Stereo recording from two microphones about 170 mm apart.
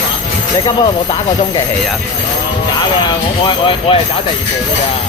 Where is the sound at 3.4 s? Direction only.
30° left (ahead or behind).